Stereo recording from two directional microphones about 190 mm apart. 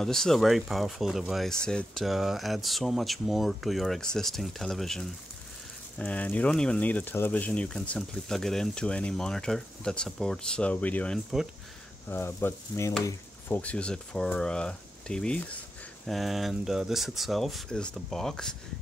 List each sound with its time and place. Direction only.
0.0 s speech: centre (ahead or behind)
12.1 s sizzle: 10° left (ahead or behind)
13.0 s speech: 10° left (ahead or behind)